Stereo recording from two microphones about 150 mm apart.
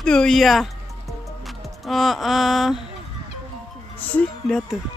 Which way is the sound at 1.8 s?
Centre (ahead or behind).